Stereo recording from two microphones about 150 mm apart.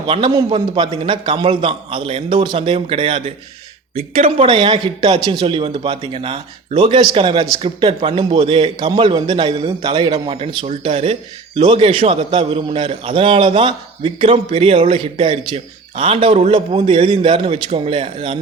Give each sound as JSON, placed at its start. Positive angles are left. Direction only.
{"t": 0.1, "sound": "a man's voice", "side_deg": -35}